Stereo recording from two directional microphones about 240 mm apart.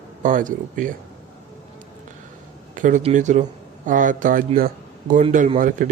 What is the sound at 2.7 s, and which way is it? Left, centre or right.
A man's voice, right.